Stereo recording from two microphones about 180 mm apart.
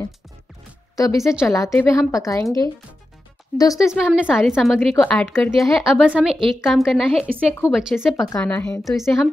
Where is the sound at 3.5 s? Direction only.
20° left (ahead or behind).